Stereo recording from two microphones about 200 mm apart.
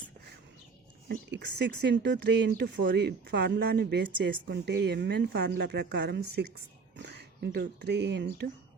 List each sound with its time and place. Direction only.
1.0 s speech: 55° right (ahead or behind)